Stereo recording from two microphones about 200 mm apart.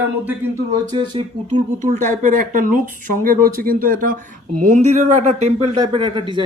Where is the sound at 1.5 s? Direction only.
40° right (ahead or behind).